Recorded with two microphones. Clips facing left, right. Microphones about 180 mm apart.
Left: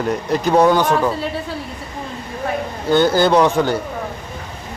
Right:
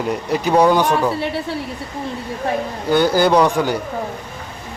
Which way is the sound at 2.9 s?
10° right (ahead or behind).